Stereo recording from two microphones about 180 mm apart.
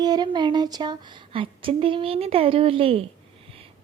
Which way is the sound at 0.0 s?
25° right (ahead or behind).